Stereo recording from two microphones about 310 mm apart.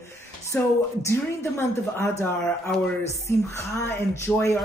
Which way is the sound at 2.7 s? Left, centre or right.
Centre.